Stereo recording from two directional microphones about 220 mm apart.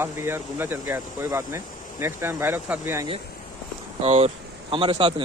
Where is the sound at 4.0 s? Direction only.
30° right (ahead or behind).